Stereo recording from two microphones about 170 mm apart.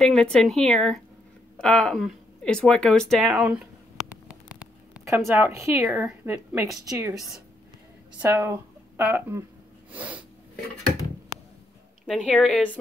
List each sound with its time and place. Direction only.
0.0 s speech: 5° left (ahead or behind)
4.3 s a sound: 5° right (ahead or behind)
5.3 s a woman's voice: 15° right (ahead or behind)
8.2 s speech: 15° right (ahead or behind)
9.9 s snort: 10° right (ahead or behind)
12.1 s speech: centre (ahead or behind)